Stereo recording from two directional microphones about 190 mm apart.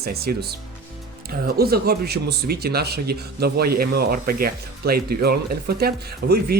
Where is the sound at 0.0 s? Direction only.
55° right (ahead or behind).